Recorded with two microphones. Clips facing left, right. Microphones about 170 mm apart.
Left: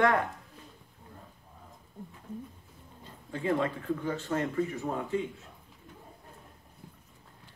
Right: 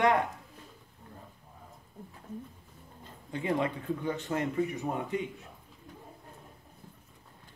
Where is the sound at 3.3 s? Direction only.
20° right (ahead or behind).